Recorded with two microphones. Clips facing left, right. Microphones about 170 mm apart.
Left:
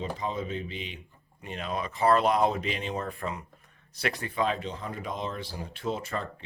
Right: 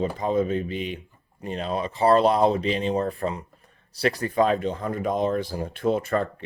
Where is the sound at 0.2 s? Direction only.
50° right (ahead or behind).